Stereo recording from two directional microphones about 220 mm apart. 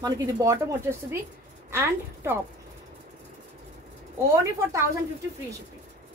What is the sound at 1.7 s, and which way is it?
Speech, 10° right (ahead or behind).